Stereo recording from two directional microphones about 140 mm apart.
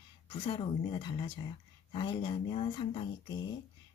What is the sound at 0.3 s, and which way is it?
Speech, 40° left (ahead or behind).